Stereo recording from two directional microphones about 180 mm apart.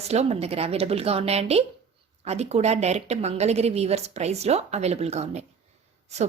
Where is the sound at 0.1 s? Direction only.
35° right (ahead or behind).